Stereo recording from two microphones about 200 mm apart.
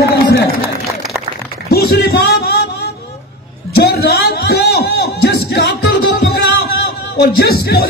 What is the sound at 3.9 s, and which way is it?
A man's voice, 50° left (ahead or behind).